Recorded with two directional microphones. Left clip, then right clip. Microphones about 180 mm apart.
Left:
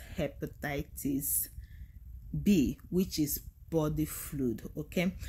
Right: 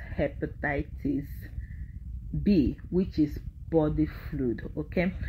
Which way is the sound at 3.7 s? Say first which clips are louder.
Right 6 dB; 20° left (ahead or behind).